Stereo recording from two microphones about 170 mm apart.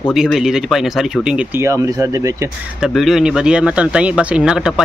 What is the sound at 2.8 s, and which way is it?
Speech, centre (ahead or behind).